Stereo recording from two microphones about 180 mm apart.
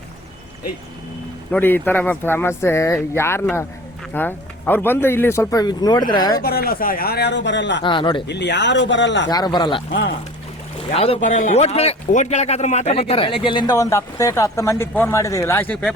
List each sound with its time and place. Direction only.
1.5 s speech: 10° left (ahead or behind)
6.4 s speech: 60° left (ahead or behind); by 7.9 s 80° left
7.9 s speech: 25° left (ahead or behind)
8.3 s speech: 75° left (ahead or behind)
9.3 s speech: 25° left (ahead or behind)
9.9 s speech: 75° left (ahead or behind)
10.9 s speech: 30° left (ahead or behind)
11.2 s speech: 45° left (ahead or behind); by 15.9 s 10° left (ahead or behind)